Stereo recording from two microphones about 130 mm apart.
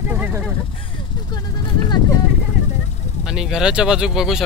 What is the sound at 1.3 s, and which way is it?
Speech, 35° left (ahead or behind).